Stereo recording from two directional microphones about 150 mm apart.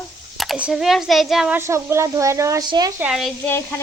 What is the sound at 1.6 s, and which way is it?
Speech, 15° right (ahead or behind).